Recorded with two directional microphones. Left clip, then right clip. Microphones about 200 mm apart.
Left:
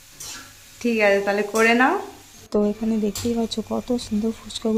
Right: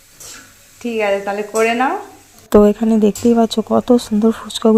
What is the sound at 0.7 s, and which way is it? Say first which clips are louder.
A woman's voice: right 1 dB; 5° left (ahead or behind).